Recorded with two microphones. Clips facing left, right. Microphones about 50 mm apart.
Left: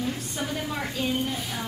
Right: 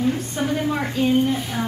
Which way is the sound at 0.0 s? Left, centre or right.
Centre.